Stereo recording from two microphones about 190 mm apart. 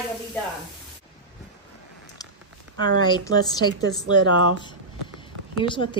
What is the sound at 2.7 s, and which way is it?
Speech, 25° left (ahead or behind).